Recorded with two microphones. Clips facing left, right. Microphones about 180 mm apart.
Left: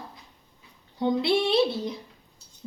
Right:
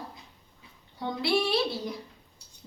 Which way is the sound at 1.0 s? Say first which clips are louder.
Left 4 dB; 20° left (ahead or behind).